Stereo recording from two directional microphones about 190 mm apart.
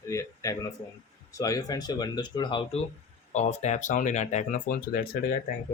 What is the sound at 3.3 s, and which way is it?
Speech, 40° left (ahead or behind).